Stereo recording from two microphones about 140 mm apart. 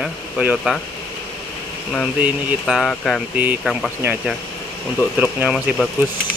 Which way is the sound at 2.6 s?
Centre (ahead or behind).